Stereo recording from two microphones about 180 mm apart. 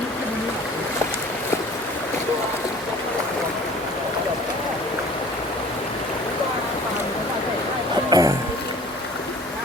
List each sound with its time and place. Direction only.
8.1 s boat: 20° right (ahead or behind)